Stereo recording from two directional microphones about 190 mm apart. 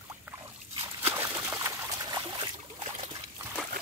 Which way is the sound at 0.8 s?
30° right (ahead or behind).